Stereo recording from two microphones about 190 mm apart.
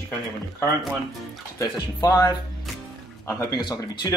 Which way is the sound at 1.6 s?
20° left (ahead or behind).